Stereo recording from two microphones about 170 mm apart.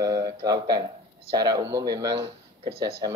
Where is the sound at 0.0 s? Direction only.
20° right (ahead or behind).